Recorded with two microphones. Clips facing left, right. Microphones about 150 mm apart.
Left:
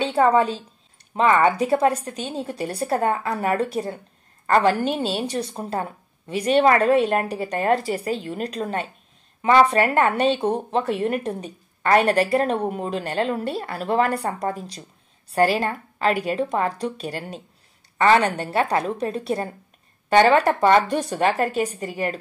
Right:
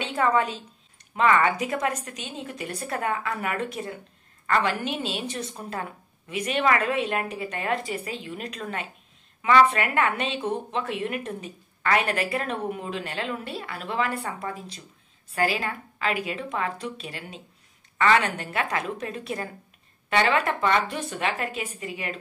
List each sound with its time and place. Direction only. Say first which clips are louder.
0.0 s a woman's voice: left 6 dB; 30° left (ahead or behind)